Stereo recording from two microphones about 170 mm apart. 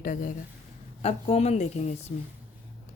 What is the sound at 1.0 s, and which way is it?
Speech, 35° left (ahead or behind).